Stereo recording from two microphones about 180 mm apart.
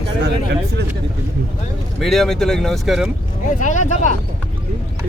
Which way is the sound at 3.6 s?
40° left (ahead or behind).